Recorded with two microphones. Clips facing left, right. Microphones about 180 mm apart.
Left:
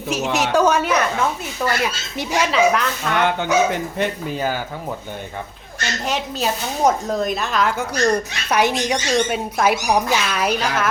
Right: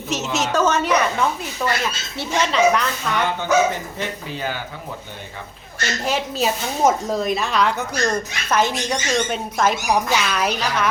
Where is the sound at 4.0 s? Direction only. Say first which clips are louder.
Left 5 dB; 45° left (ahead or behind).